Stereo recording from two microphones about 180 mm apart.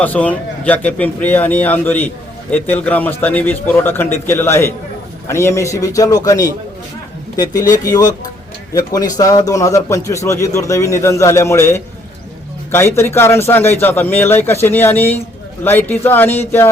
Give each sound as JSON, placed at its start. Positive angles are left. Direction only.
{"t": 0.0, "sound": "a man's voice", "side_deg": 10}